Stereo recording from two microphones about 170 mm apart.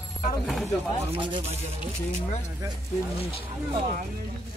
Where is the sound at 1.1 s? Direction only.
30° right (ahead or behind).